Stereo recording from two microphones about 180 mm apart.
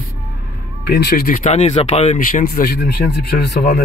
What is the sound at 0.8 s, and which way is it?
Speech, 65° left (ahead or behind).